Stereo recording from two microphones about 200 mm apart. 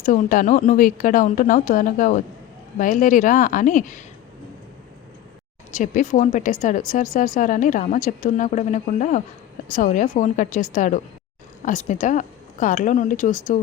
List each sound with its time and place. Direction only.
0.0 s a woman's voice: 40° left (ahead or behind)
5.7 s speech: 40° left (ahead or behind)